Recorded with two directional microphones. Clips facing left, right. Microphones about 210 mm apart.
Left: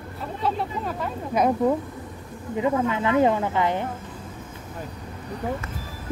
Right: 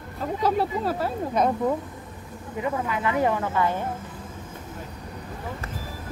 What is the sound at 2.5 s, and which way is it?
Speech, 25° left (ahead or behind).